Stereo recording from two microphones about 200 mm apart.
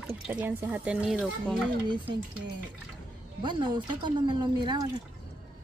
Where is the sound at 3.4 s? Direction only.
20° right (ahead or behind).